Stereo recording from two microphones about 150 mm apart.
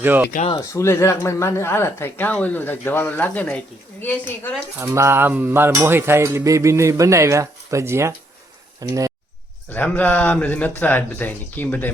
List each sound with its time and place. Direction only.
0.0 s speech: 15° right (ahead or behind)
0.5 s speech: 20° left (ahead or behind)
4.8 s a sound: 20° right (ahead or behind)
8.8 s speech: 20° right (ahead or behind)
9.6 s speech: 10° left (ahead or behind)